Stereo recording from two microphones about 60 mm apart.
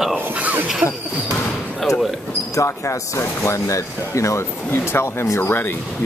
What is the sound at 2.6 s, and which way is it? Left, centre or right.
Speech, left.